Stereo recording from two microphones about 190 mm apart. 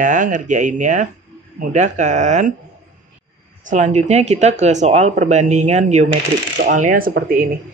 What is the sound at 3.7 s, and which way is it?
Speech, 40° right (ahead or behind).